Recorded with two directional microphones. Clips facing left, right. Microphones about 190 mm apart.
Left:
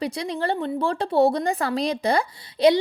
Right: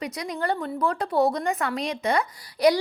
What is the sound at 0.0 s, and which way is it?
A woman's voice, 30° left (ahead or behind).